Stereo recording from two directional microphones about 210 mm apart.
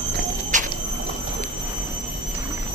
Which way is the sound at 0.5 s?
35° right (ahead or behind).